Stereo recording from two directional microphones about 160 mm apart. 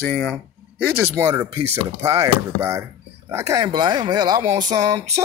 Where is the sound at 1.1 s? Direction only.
20° right (ahead or behind).